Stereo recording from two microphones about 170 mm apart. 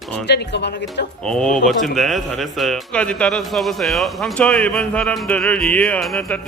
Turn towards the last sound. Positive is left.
turn(degrees=0)  # may be behind; listen again after turning